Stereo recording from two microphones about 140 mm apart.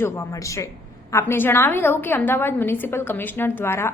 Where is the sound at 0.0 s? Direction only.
20° left (ahead or behind).